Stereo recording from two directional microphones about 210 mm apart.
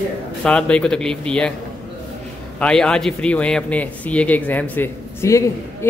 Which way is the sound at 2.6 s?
5° left (ahead or behind).